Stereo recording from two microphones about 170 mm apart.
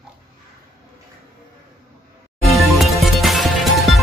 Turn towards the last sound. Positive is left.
turn(degrees=0)  # may be behind; listen again after turning